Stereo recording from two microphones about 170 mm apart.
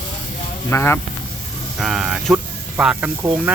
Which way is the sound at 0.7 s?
15° left (ahead or behind).